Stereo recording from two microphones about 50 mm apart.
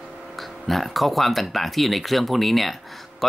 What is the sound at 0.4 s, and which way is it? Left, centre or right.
Speech, centre.